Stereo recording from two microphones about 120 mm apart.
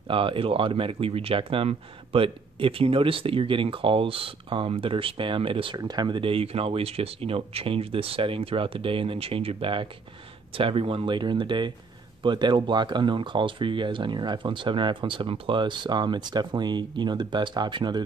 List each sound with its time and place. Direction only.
0.1 s speech: 45° right (ahead or behind)